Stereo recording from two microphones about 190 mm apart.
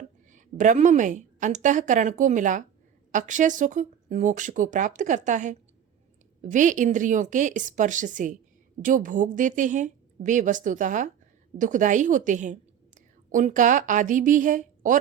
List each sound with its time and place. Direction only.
0.3 s a woman's voice: 40° right (ahead or behind)